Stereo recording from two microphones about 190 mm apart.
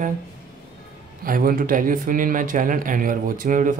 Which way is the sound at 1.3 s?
50° right (ahead or behind).